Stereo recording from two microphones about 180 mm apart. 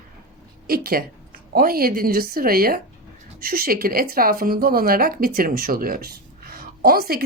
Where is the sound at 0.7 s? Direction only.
55° right (ahead or behind).